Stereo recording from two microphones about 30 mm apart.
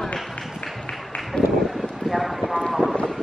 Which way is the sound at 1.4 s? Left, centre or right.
Left.